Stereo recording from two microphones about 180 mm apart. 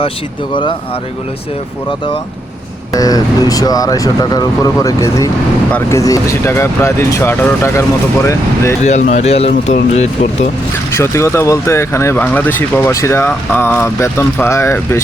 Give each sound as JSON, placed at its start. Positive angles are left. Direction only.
{"t": 2.9, "sound": "speech", "side_deg": 20}
{"t": 8.8, "sound": "speech", "side_deg": 40}
{"t": 10.9, "sound": "speech", "side_deg": 15}